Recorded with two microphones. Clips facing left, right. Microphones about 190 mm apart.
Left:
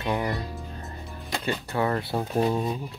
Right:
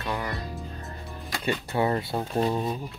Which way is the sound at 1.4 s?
20° right (ahead or behind).